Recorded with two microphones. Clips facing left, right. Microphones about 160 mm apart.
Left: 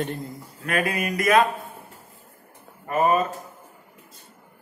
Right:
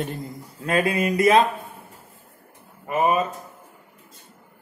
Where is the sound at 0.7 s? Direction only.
25° right (ahead or behind).